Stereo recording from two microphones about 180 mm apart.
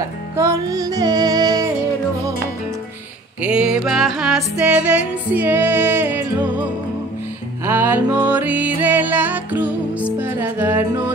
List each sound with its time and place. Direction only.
0.4 s music: 20° right (ahead or behind)
3.4 s music: 5° right (ahead or behind)
7.6 s music: 10° right (ahead or behind)